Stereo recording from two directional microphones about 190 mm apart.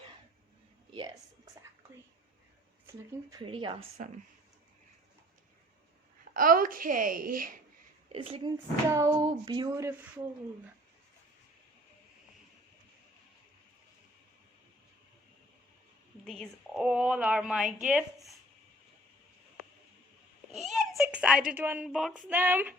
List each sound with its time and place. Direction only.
0.9 s a woman's voice: 20° right (ahead or behind)
2.8 s speech: 15° right (ahead or behind)
3.4 s a woman's voice: 25° right (ahead or behind)
6.3 s speech: 45° right (ahead or behind)
8.1 s a woman's voice: 30° right (ahead or behind)
8.9 s music: 15° right (ahead or behind)
16.2 s a woman's voice: 5° left (ahead or behind)
20.5 s a child's voice: centre (ahead or behind)
22.3 s music: 10° right (ahead or behind)